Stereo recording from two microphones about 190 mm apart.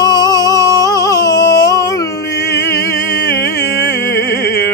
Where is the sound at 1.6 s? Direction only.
15° left (ahead or behind).